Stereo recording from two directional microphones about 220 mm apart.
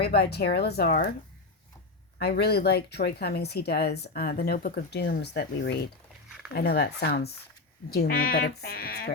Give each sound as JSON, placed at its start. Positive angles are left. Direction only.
{"t": 0.0, "sound": "speech", "side_deg": 45}
{"t": 2.1, "sound": "speech", "side_deg": 45}